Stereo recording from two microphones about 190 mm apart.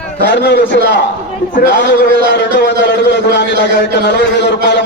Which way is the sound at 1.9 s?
65° left (ahead or behind).